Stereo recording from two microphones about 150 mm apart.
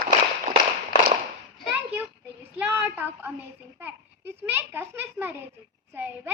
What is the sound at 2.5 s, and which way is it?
A woman's voice, 15° right (ahead or behind).